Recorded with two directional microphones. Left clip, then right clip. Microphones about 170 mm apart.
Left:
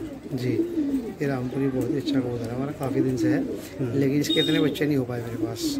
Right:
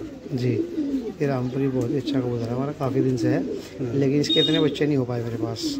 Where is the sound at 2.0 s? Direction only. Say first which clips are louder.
Right 1 dB; 35° right (ahead or behind).